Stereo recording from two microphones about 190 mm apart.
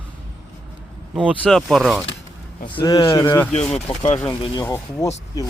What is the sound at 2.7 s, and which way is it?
Speech, 25° left (ahead or behind).